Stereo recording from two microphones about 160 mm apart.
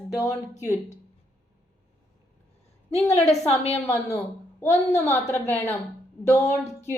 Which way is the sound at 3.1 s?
45° left (ahead or behind).